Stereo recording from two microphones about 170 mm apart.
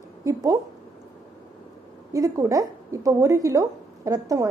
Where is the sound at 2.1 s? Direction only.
20° right (ahead or behind).